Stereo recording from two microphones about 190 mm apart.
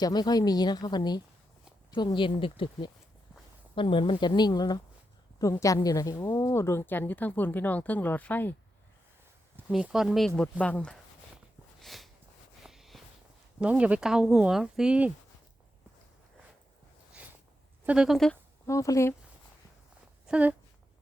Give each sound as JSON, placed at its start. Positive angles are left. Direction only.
{"t": 0.0, "sound": "a woman's voice", "side_deg": 20}
{"t": 9.7, "sound": "speech", "side_deg": -5}
{"t": 11.8, "sound": "a sound", "side_deg": 0}
{"t": 13.6, "sound": "speech", "side_deg": -5}
{"t": 17.8, "sound": "speech", "side_deg": -5}
{"t": 18.6, "sound": "a woman's voice", "side_deg": 15}
{"t": 20.2, "sound": "speech", "side_deg": -5}